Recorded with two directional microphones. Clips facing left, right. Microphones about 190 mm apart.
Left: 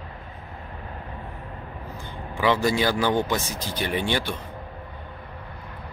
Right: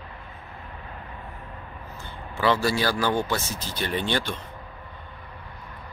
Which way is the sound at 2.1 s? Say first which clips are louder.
Left 1 dB; 15° left (ahead or behind).